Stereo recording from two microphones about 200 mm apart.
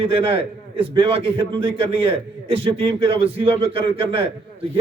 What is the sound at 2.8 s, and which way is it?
A man's voice, 30° right (ahead or behind).